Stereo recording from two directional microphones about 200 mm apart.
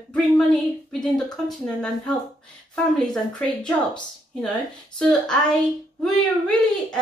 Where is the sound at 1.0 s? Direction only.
Centre (ahead or behind).